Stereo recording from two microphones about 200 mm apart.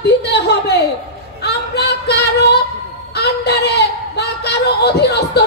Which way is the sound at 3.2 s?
55° left (ahead or behind).